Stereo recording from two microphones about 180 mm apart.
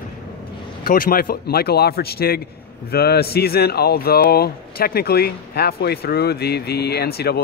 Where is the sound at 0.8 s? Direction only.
50° left (ahead or behind).